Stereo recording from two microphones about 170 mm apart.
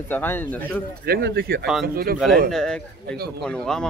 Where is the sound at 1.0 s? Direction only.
65° right (ahead or behind).